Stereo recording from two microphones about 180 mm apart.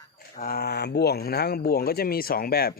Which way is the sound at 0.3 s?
55° left (ahead or behind).